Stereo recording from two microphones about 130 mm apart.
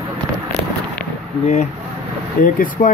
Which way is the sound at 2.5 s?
90° left.